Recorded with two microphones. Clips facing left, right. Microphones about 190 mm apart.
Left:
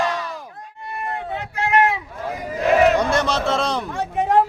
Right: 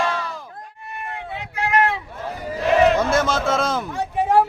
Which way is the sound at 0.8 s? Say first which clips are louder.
Left 5 dB; 35° left (ahead or behind).